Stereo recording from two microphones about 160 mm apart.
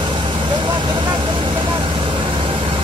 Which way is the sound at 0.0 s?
30° right (ahead or behind).